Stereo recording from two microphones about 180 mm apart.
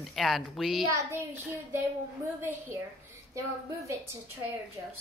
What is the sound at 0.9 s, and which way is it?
Speech, 15° right (ahead or behind).